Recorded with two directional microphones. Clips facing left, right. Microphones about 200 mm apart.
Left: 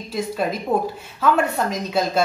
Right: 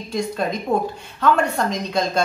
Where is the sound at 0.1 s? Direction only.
5° left (ahead or behind).